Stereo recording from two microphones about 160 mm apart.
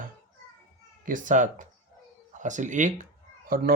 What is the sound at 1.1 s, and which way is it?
Speech, 55° right (ahead or behind).